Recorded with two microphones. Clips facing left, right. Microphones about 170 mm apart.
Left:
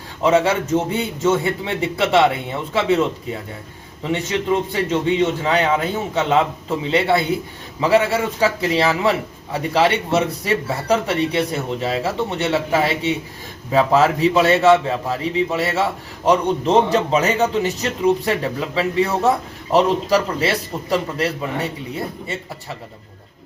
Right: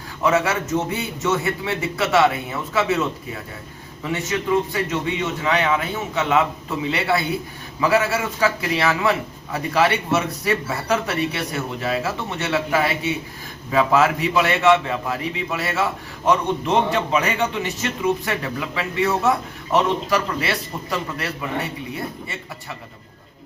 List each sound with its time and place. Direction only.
0.2 s a man's voice: 30° left (ahead or behind)